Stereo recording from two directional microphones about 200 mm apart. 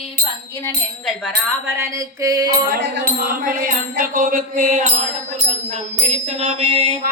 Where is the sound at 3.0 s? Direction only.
45° right (ahead or behind).